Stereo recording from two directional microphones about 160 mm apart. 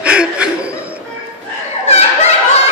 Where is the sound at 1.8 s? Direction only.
40° left (ahead or behind).